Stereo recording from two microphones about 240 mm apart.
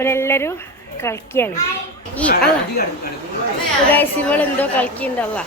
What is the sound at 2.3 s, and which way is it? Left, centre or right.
Speech, left.